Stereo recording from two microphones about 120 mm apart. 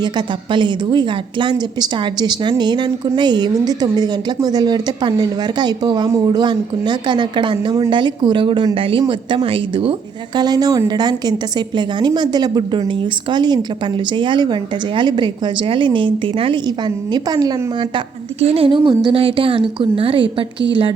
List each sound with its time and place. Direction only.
0.0 s a woman's voice: 40° right (ahead or behind)
10.3 s a woman's voice: 35° right (ahead or behind)
18.3 s a woman's voice: 50° right (ahead or behind)